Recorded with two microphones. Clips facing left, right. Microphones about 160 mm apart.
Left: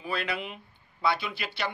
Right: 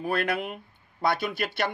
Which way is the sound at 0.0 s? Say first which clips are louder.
Right 5 dB; 50° right (ahead or behind).